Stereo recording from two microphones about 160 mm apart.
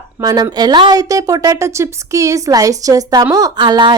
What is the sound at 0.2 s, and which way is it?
A woman's voice, 25° right (ahead or behind).